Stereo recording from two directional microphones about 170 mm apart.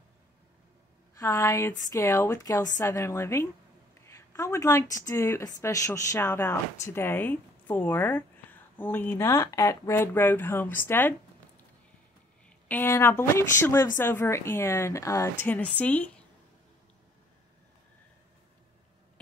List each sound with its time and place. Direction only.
1.2 s speech: 20° left (ahead or behind)
12.6 s speech: 10° left (ahead or behind)